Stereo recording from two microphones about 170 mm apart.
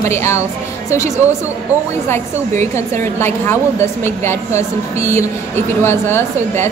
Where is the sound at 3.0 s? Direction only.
15° left (ahead or behind).